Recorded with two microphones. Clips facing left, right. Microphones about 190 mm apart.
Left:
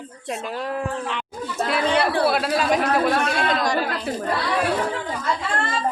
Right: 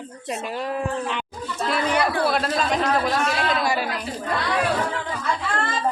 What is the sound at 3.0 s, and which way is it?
Speech, 55° left (ahead or behind).